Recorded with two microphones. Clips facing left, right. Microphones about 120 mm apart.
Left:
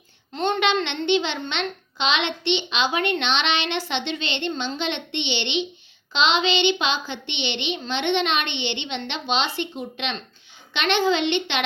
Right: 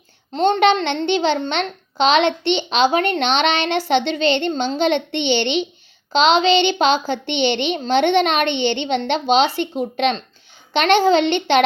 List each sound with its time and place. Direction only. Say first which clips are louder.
0.3 s a child's voice: right 7 dB; 30° right (ahead or behind)